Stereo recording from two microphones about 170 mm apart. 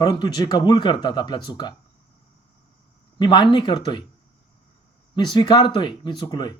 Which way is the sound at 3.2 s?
25° left (ahead or behind).